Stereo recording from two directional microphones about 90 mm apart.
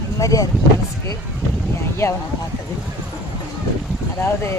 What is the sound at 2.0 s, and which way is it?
Speech, 35° left (ahead or behind).